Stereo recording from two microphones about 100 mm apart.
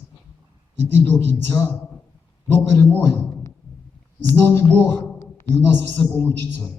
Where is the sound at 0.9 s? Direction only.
20° left (ahead or behind).